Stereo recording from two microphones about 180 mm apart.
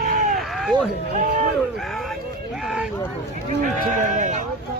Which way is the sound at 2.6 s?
5° right (ahead or behind).